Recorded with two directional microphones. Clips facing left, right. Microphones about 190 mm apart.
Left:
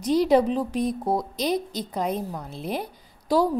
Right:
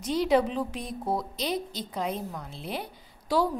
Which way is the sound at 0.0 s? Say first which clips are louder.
Left 5 dB; 40° left (ahead or behind).